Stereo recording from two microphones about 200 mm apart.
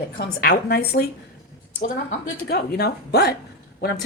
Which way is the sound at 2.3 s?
50° left (ahead or behind).